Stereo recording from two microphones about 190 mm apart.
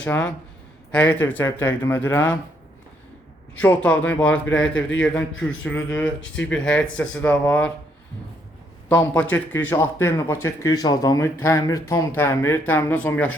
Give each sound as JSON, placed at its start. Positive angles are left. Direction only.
{"t": 0.0, "sound": "speech", "side_deg": 10}
{"t": 3.5, "sound": "speech", "side_deg": 10}
{"t": 4.7, "sound": "a man's voice", "side_deg": 80}
{"t": 5.4, "sound": "speech", "side_deg": 5}
{"t": 8.9, "sound": "speech", "side_deg": 10}